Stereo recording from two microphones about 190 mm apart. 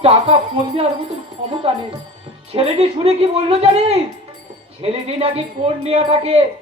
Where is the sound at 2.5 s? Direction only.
30° right (ahead or behind).